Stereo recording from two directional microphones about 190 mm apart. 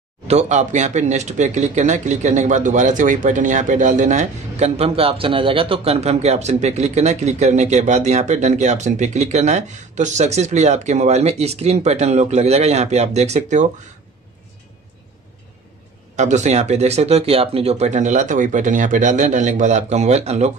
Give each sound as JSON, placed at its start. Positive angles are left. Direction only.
{"t": 0.3, "sound": "speech", "side_deg": -35}
{"t": 16.2, "sound": "speech", "side_deg": -35}